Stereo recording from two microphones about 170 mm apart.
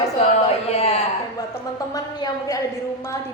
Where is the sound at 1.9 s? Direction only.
20° left (ahead or behind).